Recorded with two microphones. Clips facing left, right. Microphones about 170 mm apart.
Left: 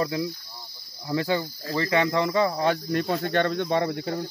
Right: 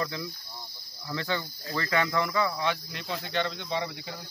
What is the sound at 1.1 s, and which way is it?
Speech, 20° left (ahead or behind).